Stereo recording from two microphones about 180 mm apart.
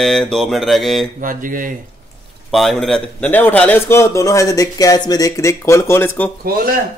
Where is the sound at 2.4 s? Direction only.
Centre (ahead or behind).